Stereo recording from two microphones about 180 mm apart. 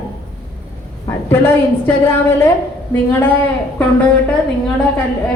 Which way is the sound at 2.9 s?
10° left (ahead or behind).